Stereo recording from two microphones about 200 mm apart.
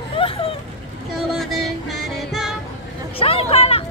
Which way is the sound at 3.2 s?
30° left (ahead or behind).